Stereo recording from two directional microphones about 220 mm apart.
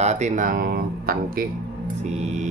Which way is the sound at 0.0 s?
30° right (ahead or behind).